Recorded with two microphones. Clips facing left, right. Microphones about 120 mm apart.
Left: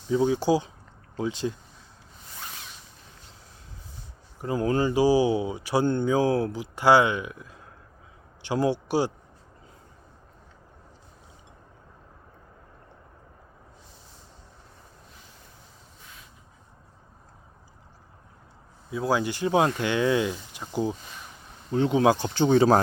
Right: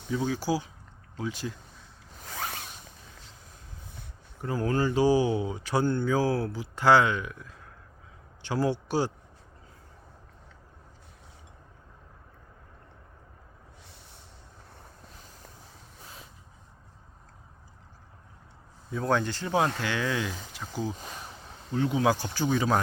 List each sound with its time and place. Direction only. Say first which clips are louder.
0.1 s speech: left 6 dB; 25° left (ahead or behind)
2.2 s zipper: right 7 dB; 85° right
4.4 s speech: left 3 dB; 20° left (ahead or behind)
18.9 s speech: left 2 dB; 5° left (ahead or behind); by 22.8 s 35° left (ahead or behind)